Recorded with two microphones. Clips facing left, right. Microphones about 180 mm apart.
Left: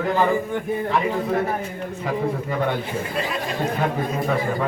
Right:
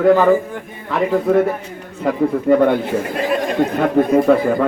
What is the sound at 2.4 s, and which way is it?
Speech, 55° right (ahead or behind).